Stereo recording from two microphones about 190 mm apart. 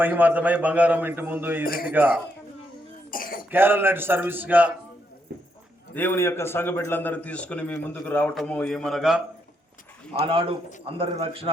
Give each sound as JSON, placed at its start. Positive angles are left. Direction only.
{"t": 0.0, "sound": "a man's voice", "side_deg": -10}
{"t": 1.6, "sound": "speech", "side_deg": 50}
{"t": 1.9, "sound": "a man's voice", "side_deg": -10}
{"t": 3.1, "sound": "throat clearing", "side_deg": 50}
{"t": 3.5, "sound": "a man's voice", "side_deg": -10}
{"t": 5.9, "sound": "a man's voice", "side_deg": 10}
{"t": 10.2, "sound": "a man's voice", "side_deg": -30}